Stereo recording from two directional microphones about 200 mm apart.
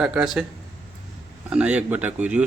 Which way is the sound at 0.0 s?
5° right (ahead or behind).